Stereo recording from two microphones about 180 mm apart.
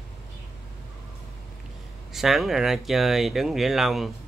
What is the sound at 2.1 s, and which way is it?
Speech, centre (ahead or behind).